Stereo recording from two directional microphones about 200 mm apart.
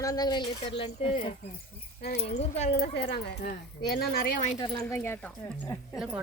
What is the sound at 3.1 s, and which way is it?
Speech, 50° left (ahead or behind).